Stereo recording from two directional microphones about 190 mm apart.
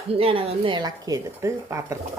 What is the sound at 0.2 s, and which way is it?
A woman's voice, 30° right (ahead or behind).